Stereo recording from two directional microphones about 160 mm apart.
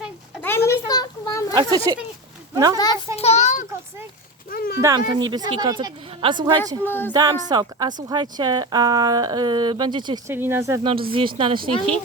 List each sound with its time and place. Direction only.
0.4 s a sound: 15° left (ahead or behind)
1.5 s speech: 25° right (ahead or behind)
2.7 s a child's voice: 25° left (ahead or behind)
3.2 s a sound: 45° left (ahead or behind)
4.5 s speech: 70° left (ahead or behind)
4.8 s speech: 25° right (ahead or behind)
6.8 s a sound: 10° left (ahead or behind)
7.1 s speech: 25° right (ahead or behind)
10.2 s speech: 15° right (ahead or behind)
11.1 s speech: 35° right (ahead or behind)